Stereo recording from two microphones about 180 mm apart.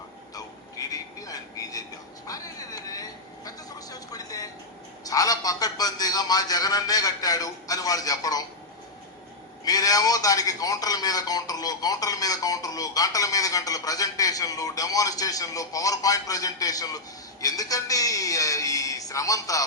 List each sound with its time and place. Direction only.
0.3 s a sound: 20° left (ahead or behind)
5.0 s speech: 20° left (ahead or behind)
9.6 s speech: 20° left (ahead or behind)